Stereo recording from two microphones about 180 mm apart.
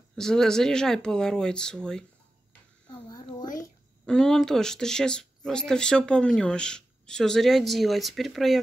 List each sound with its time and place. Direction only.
0.1 s speech: 5° left (ahead or behind)
2.9 s a sound: 25° left (ahead or behind)
4.0 s speech: 5° left (ahead or behind)